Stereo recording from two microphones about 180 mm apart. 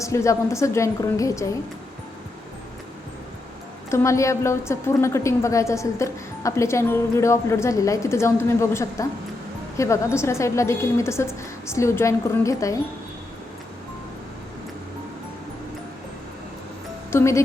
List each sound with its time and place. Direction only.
0.0 s a woman's voice: 15° left (ahead or behind)
3.8 s a woman's voice: 15° left (ahead or behind)
17.1 s speech: 15° left (ahead or behind)